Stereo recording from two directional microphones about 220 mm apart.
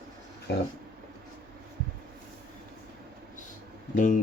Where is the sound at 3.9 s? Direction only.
35° left (ahead or behind).